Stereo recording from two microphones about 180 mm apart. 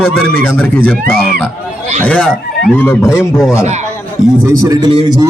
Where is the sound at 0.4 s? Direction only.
10° left (ahead or behind).